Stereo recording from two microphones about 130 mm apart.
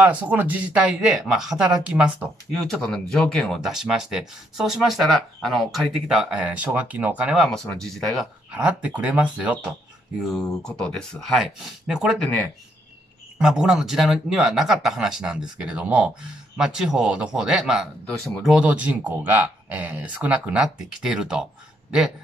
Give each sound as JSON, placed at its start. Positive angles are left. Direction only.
{"t": 0.0, "sound": "speech", "side_deg": -15}
{"t": 2.6, "sound": "speech", "side_deg": 5}
{"t": 7.3, "sound": "speech", "side_deg": 0}
{"t": 8.5, "sound": "speech", "side_deg": -10}
{"t": 10.2, "sound": "speech", "side_deg": 5}
{"t": 13.4, "sound": "speech", "side_deg": -5}